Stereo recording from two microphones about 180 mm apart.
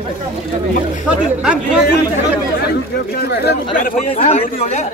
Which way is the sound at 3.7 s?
50° left (ahead or behind).